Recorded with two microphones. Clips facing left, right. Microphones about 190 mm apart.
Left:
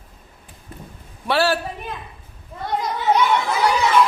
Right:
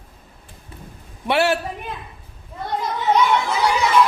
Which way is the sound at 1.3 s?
20° right (ahead or behind).